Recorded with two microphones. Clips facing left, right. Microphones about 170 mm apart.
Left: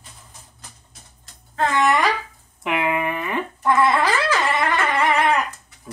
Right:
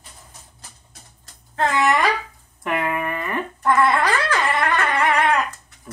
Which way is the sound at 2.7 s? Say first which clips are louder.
Left 1 dB; 15° left (ahead or behind).